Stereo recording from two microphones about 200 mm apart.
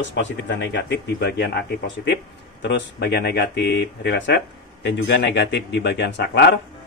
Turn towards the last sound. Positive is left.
turn(degrees=60)  # may be behind; listen again after turning